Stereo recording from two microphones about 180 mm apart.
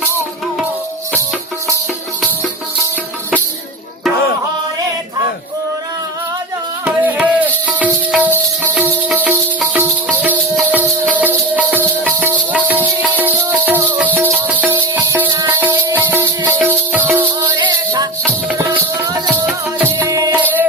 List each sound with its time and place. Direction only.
6.8 s music: 5° right (ahead or behind)
17.6 s music: 25° right (ahead or behind)